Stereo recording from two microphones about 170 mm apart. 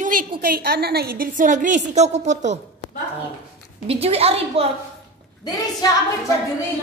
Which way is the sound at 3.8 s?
35° right (ahead or behind).